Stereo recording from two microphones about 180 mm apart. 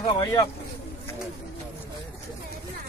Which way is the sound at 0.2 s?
20° left (ahead or behind).